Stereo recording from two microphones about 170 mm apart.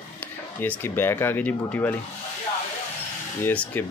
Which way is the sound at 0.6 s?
10° left (ahead or behind).